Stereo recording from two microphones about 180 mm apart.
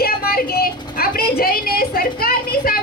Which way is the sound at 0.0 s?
55° left (ahead or behind).